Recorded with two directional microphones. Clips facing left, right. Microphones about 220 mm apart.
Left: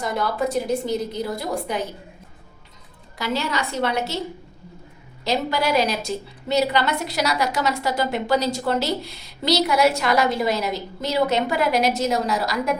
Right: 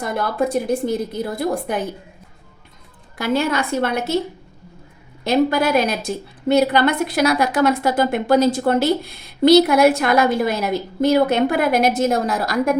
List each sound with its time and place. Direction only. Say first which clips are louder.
0.0 s a woman's voice: right 3 dB; 55° right (ahead or behind)
3.2 s a woman's voice: right 6 dB; 50° right (ahead or behind)
5.2 s a woman's voice: right 6 dB; 55° right (ahead or behind)